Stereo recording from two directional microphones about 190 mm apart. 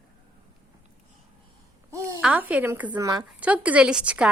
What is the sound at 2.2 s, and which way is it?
Speech, 5° right (ahead or behind).